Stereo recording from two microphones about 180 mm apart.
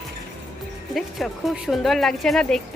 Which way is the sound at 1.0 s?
Centre (ahead or behind).